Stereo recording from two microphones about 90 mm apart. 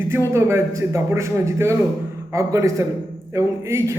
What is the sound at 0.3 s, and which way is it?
A man's voice, 30° right (ahead or behind).